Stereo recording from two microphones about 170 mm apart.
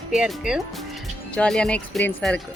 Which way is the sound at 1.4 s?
5° left (ahead or behind).